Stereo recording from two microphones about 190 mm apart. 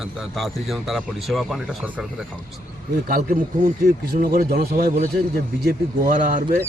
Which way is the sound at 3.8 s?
50° right (ahead or behind).